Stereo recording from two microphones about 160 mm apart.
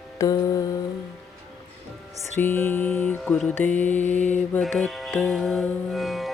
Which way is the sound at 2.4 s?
15° left (ahead or behind).